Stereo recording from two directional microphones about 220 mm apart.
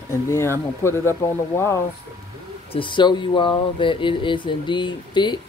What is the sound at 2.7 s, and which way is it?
Speech, 20° left (ahead or behind).